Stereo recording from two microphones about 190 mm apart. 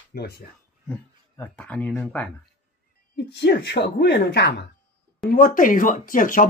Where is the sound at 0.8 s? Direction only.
5° left (ahead or behind).